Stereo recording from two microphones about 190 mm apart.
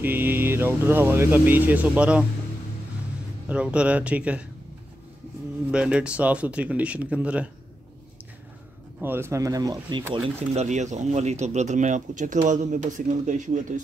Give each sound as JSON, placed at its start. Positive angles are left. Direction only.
{"t": 0.0, "sound": "speech", "side_deg": -10}
{"t": 3.4, "sound": "speech", "side_deg": -5}
{"t": 5.7, "sound": "speech", "side_deg": -5}
{"t": 9.0, "sound": "speech", "side_deg": -10}
{"t": 10.5, "sound": "speech", "side_deg": -35}